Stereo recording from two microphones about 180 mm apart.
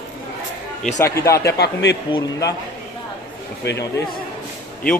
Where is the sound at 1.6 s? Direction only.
75° left (ahead or behind).